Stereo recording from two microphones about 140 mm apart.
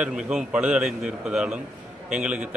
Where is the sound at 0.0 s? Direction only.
5° right (ahead or behind).